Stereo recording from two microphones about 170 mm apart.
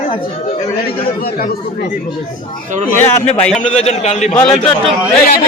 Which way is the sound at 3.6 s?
40° left (ahead or behind).